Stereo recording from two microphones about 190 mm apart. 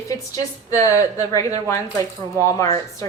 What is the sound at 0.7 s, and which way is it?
Speech, 15° left (ahead or behind).